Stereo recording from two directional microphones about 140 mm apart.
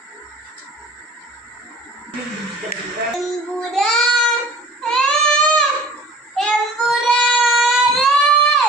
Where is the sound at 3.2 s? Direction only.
Centre (ahead or behind).